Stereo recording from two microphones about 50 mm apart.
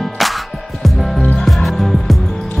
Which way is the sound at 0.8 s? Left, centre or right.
Centre.